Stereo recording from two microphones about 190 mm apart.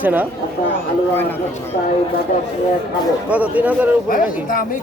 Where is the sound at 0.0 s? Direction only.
10° right (ahead or behind).